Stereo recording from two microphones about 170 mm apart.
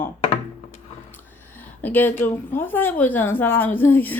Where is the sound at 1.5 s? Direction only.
10° left (ahead or behind).